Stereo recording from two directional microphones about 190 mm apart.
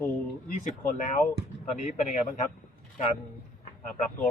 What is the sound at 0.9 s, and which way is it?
Speech, 45° left (ahead or behind).